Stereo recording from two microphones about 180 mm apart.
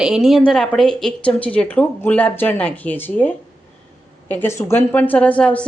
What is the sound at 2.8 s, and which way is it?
A woman's voice, 10° left (ahead or behind).